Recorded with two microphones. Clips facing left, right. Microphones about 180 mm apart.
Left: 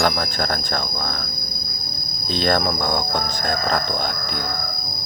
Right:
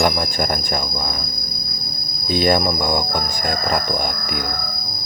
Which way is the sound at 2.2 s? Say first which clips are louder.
Right 3 dB; 10° right (ahead or behind).